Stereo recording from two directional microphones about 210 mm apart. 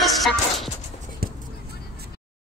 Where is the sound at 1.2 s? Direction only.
45° right (ahead or behind).